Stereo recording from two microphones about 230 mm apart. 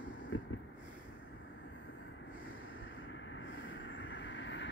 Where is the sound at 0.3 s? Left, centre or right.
Left.